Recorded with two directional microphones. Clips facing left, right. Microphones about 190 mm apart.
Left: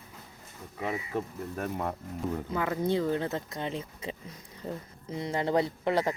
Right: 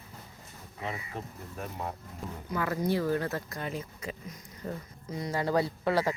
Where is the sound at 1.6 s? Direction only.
55° left (ahead or behind).